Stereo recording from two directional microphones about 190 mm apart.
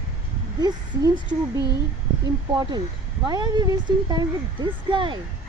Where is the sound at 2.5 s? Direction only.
20° right (ahead or behind).